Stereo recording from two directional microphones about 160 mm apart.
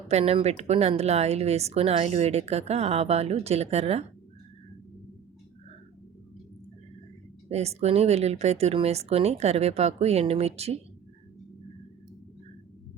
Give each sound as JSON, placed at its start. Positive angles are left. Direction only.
{"t": 0.1, "sound": "speech", "side_deg": -40}
{"t": 7.4, "sound": "speech", "side_deg": -40}